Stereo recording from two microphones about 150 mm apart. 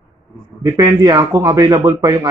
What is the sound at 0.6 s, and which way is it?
A man's voice, 25° right (ahead or behind).